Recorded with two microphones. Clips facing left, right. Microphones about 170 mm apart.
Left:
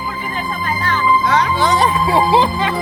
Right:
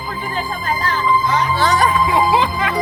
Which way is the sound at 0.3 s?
35° right (ahead or behind).